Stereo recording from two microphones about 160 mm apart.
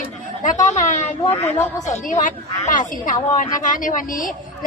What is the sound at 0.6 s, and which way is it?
Speech, 50° left (ahead or behind).